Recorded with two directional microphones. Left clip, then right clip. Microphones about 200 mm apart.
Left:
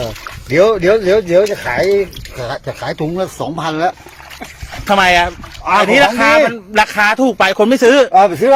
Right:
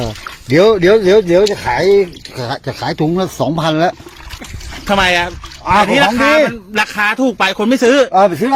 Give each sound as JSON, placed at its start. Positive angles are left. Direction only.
{"t": 0.5, "sound": "speech", "side_deg": -35}
{"t": 4.9, "sound": "speech", "side_deg": 0}
{"t": 8.1, "sound": "speech", "side_deg": -25}